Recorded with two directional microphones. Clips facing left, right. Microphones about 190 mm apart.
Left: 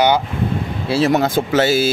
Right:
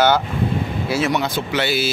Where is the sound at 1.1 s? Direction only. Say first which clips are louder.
Left 5 dB; 45° left (ahead or behind).